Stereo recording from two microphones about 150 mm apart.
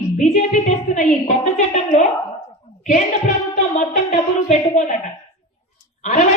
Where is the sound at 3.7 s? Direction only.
50° left (ahead or behind).